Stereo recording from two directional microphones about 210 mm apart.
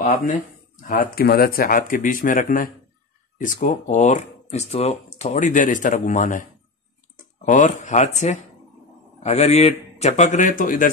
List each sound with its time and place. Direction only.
0.0 s speech: 45° left (ahead or behind)
7.4 s speech: 35° left (ahead or behind)